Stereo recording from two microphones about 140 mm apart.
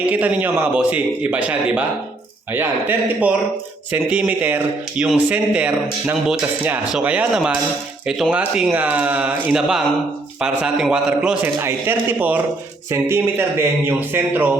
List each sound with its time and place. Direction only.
0.0 s a man's voice: 10° right (ahead or behind)